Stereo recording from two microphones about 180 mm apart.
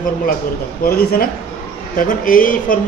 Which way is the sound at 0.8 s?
55° left (ahead or behind).